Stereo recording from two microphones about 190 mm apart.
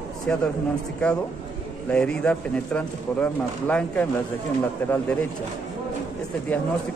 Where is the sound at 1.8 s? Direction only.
5° left (ahead or behind).